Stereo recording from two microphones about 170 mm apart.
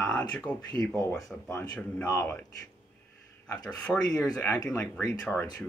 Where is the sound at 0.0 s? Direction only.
10° left (ahead or behind).